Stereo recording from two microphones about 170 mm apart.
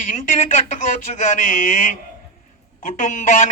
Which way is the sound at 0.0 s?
50° left (ahead or behind).